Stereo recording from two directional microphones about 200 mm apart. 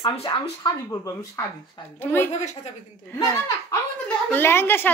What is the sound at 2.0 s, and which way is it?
Speech, 10° left (ahead or behind).